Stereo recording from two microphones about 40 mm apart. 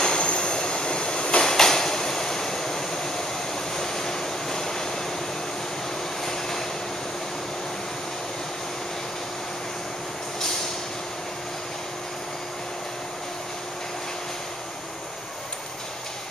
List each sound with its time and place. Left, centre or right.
0.0 s train: left
1.4 s train: centre
3.7 s waves: centre
6.2 s vehicle: centre